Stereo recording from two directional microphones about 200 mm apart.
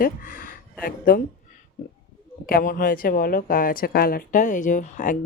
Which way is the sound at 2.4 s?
45° left (ahead or behind).